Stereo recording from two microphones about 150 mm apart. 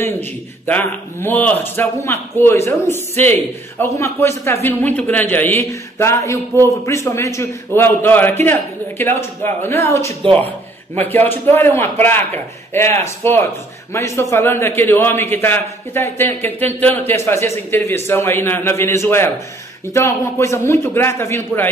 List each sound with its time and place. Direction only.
0.0 s a man's voice: 15° left (ahead or behind)